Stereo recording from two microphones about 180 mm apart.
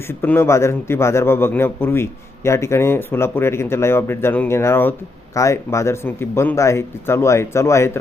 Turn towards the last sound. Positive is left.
turn(degrees=15)  # may be behind; listen again after turning